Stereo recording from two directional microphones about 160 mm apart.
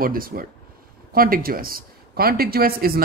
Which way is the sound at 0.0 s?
65° right (ahead or behind).